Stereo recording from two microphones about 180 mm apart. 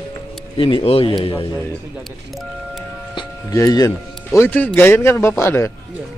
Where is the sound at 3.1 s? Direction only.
20° left (ahead or behind).